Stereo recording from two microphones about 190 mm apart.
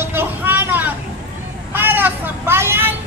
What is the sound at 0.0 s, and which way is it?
Vehicle, 10° right (ahead or behind).